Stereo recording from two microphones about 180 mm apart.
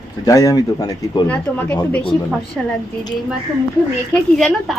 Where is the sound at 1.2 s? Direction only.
10° left (ahead or behind).